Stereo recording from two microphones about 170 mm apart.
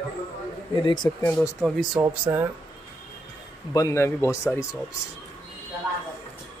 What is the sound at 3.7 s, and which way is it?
Speech, 15° left (ahead or behind).